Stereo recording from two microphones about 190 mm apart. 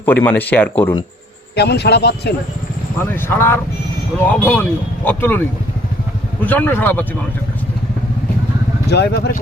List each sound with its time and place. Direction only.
0.0 s speech: 10° left (ahead or behind)
1.5 s a man's voice: 60° left (ahead or behind)
3.0 s speech: 10° left (ahead or behind)
8.9 s a man's voice: 60° left (ahead or behind)